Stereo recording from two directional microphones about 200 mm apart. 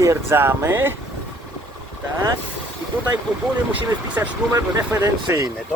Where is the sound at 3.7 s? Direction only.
15° right (ahead or behind).